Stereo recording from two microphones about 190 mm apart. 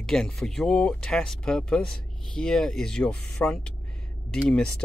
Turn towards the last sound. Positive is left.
turn(degrees=5)  # may be behind; listen again after turning